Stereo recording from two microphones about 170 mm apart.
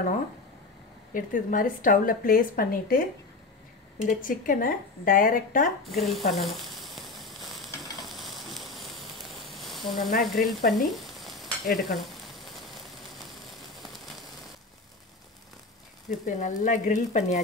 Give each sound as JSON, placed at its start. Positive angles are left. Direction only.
{"t": 1.1, "sound": "a woman's voice", "side_deg": 55}
{"t": 4.0, "sound": "speech", "side_deg": 55}
{"t": 5.9, "sound": "sizzle", "side_deg": 0}
{"t": 9.5, "sound": "a sound", "side_deg": 0}
{"t": 10.2, "sound": "speech", "side_deg": 0}
{"t": 10.7, "sound": "stir", "side_deg": 0}
{"t": 16.1, "sound": "speech", "side_deg": 45}